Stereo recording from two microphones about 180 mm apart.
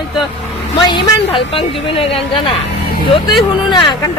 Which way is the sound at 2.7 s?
60° left (ahead or behind).